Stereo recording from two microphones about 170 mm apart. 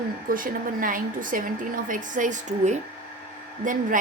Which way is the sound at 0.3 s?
55° right (ahead or behind).